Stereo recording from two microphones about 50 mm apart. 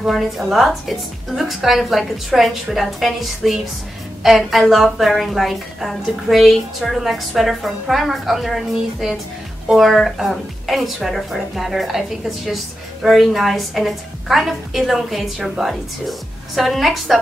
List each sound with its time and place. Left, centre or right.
0.1 s a woman's voice: centre
13.0 s a woman's voice: centre